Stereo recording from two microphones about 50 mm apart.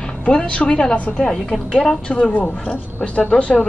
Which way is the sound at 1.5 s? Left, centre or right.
Centre.